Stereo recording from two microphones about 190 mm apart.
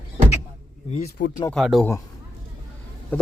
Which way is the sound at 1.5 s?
Centre (ahead or behind).